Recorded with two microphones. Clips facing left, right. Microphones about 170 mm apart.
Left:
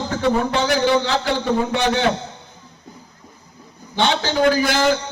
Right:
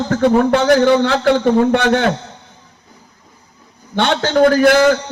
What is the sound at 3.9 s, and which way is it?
Speech, 55° right (ahead or behind).